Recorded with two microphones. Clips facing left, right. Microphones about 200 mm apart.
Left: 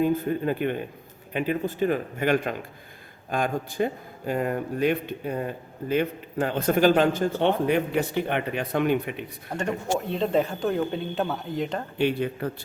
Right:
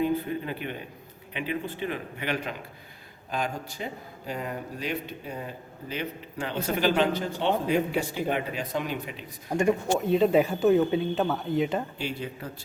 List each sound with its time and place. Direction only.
0.0 s a man's voice: 45° left (ahead or behind)
9.5 s speech: 10° right (ahead or behind)
11.9 s speech: 60° left (ahead or behind)